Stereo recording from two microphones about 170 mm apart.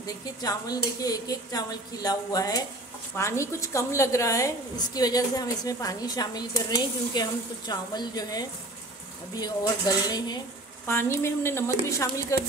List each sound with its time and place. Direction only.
0.0 s a woman's voice: 20° left (ahead or behind)